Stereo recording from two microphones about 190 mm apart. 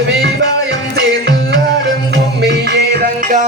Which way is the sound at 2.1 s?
60° right (ahead or behind).